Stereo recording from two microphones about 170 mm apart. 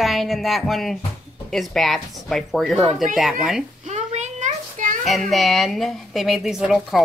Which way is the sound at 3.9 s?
40° right (ahead or behind).